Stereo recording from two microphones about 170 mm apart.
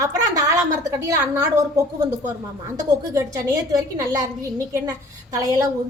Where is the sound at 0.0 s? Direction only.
20° right (ahead or behind).